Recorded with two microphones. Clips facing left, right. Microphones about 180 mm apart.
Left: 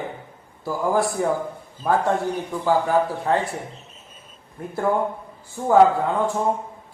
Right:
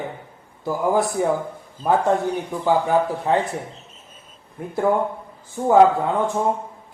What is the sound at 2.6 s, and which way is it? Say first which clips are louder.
Speech: right 1 dB; 15° right (ahead or behind).